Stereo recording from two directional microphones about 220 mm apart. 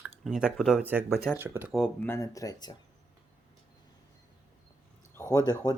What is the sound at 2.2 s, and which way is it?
Speech, 15° left (ahead or behind).